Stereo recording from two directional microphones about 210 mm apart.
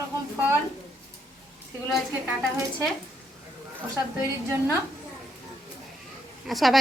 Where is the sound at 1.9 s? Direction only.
Centre (ahead or behind).